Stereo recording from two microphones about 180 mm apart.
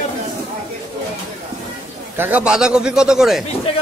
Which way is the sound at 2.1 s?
10° right (ahead or behind).